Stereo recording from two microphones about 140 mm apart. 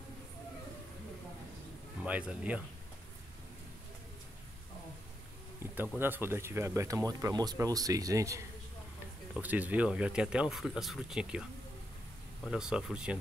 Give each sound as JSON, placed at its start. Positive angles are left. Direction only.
{"t": 2.0, "sound": "speech", "side_deg": -10}
{"t": 5.6, "sound": "insect", "side_deg": -15}
{"t": 5.9, "sound": "speech", "side_deg": -15}
{"t": 9.4, "sound": "speech", "side_deg": -10}
{"t": 12.4, "sound": "speech", "side_deg": -5}